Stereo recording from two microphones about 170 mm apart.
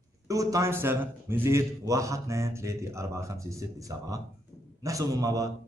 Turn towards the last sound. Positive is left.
turn(degrees=-20)  # may be behind; listen again after turning